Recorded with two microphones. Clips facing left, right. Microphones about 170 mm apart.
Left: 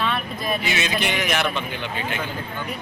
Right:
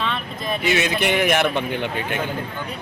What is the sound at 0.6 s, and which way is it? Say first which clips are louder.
Speech: right 4 dB; 55° right (ahead or behind).